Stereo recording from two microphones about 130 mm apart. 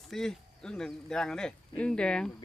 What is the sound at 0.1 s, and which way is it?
Speech, 5° left (ahead or behind).